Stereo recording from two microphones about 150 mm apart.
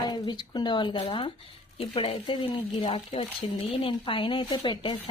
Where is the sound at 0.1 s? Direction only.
30° left (ahead or behind).